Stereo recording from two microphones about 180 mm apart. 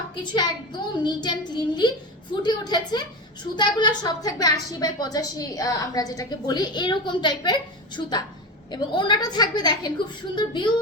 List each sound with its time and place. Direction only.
0.3 s a woman's voice: 25° left (ahead or behind)